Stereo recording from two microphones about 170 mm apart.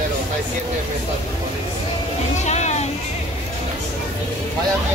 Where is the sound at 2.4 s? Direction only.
45° left (ahead or behind).